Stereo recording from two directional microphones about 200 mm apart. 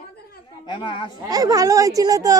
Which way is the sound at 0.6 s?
25° left (ahead or behind).